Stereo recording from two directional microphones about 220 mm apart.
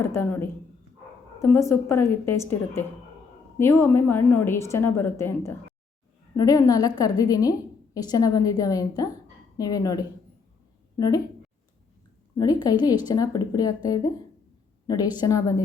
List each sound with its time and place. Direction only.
0.0 s a woman's voice: 10° left (ahead or behind)
12.4 s a woman's voice: 15° left (ahead or behind)